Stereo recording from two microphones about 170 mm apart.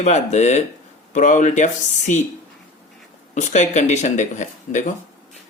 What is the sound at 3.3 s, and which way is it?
Speech, 45° left (ahead or behind).